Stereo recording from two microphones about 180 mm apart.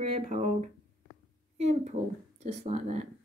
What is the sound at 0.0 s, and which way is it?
Speech, 35° right (ahead or behind).